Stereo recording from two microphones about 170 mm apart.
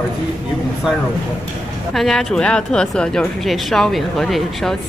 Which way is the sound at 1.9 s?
Centre (ahead or behind).